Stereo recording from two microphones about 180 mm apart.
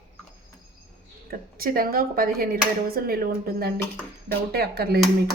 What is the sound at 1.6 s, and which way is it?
Speech, 55° right (ahead or behind).